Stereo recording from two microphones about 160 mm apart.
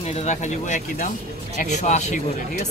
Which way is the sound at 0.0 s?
40° left (ahead or behind).